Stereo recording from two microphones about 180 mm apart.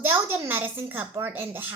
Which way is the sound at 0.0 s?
10° right (ahead or behind).